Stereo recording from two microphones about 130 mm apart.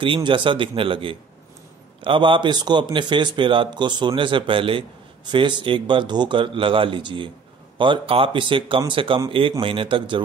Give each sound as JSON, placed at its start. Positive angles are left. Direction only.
{"t": 0.0, "sound": "a man's voice", "side_deg": -40}